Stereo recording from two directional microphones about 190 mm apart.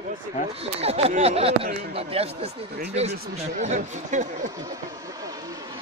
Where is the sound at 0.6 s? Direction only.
30° right (ahead or behind).